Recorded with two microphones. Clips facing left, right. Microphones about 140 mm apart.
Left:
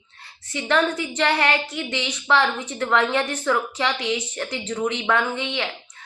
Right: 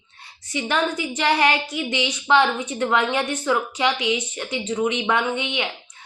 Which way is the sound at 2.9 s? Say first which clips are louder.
Left 2 dB; 10° right (ahead or behind).